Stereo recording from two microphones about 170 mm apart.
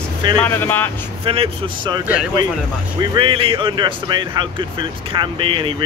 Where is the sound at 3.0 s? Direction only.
30° right (ahead or behind).